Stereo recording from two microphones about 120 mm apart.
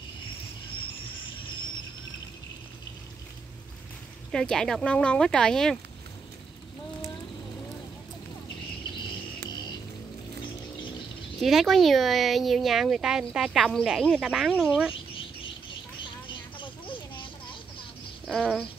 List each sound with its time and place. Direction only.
4.3 s speech: 5° left (ahead or behind)
8.9 s music: 40° left (ahead or behind)
11.4 s speech: centre (ahead or behind)
16.5 s a sound: 45° left (ahead or behind)
18.2 s speech: 5° right (ahead or behind)